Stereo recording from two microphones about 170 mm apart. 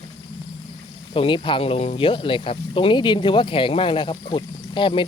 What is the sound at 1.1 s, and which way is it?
Speech, 30° left (ahead or behind).